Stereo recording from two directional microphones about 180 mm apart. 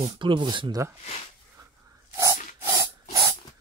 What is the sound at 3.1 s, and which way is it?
Music, 20° right (ahead or behind).